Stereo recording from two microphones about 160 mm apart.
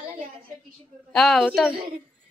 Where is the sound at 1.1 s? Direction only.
5° left (ahead or behind).